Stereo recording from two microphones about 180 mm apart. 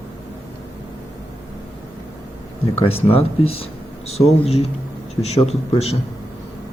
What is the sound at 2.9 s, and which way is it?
Speech, 35° left (ahead or behind).